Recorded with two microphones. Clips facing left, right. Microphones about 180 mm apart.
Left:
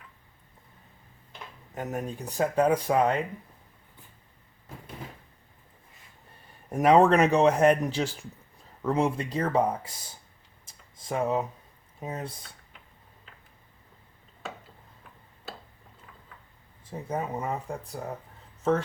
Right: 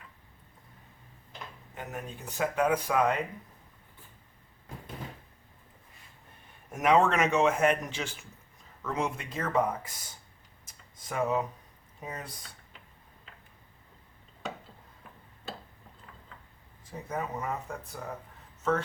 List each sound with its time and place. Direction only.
1.7 s speech: 40° left (ahead or behind)
6.7 s speech: 35° left (ahead or behind)
10.7 s a sound: 30° left (ahead or behind)
12.0 s speech: 25° left (ahead or behind)
16.8 s speech: 30° left (ahead or behind)